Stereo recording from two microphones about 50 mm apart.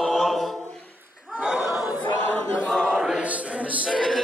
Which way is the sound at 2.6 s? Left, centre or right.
Centre.